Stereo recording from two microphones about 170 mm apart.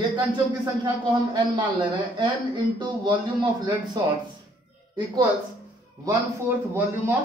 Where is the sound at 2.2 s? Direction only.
30° right (ahead or behind).